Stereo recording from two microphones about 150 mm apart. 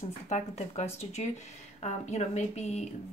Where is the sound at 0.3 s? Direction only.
50° left (ahead or behind).